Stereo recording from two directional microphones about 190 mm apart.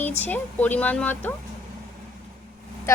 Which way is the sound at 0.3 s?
10° left (ahead or behind).